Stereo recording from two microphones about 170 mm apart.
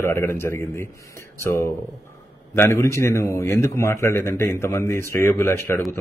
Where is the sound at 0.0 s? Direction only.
15° left (ahead or behind).